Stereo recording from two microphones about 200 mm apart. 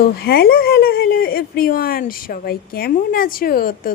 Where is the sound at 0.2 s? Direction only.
50° left (ahead or behind).